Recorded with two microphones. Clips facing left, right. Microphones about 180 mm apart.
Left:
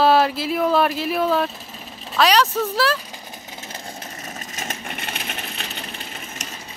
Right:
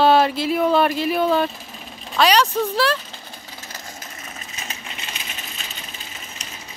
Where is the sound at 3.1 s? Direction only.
20° left (ahead or behind); by 6.2 s 65° left (ahead or behind).